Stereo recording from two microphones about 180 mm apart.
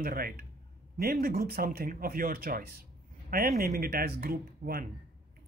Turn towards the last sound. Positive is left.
turn(degrees=-55)  # may be behind; listen again after turning